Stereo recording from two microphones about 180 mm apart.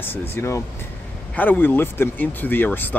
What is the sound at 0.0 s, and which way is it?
Speech, 10° left (ahead or behind).